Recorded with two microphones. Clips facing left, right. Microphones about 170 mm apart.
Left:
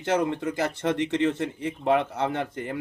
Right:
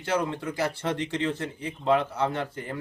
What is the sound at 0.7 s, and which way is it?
Speech, 20° left (ahead or behind).